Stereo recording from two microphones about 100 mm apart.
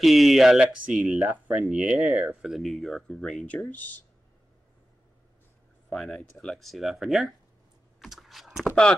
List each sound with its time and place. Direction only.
0.0 s speech: centre (ahead or behind)
1.2 s speech: 15° right (ahead or behind); by 4.0 s 20° left (ahead or behind)
5.9 s speech: 5° left (ahead or behind)
8.0 s typing: centre (ahead or behind)
8.6 s speech: 10° left (ahead or behind)